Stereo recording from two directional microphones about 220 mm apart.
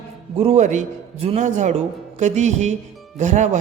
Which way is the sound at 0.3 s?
30° right (ahead or behind).